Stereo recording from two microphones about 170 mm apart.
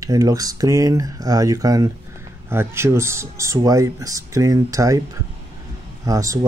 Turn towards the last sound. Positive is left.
turn(degrees=-20)  # may be behind; listen again after turning